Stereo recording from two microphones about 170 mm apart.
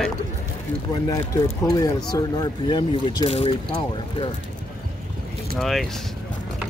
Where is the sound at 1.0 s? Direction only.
20° left (ahead or behind).